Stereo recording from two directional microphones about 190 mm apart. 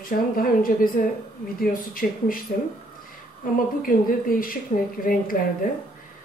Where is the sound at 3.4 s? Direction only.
45° left (ahead or behind).